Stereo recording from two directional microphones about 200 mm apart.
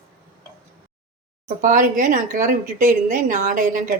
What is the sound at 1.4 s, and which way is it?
A woman's voice, 45° right (ahead or behind).